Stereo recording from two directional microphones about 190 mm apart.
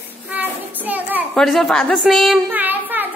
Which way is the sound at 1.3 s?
5° left (ahead or behind).